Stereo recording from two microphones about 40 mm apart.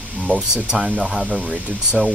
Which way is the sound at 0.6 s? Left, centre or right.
Centre.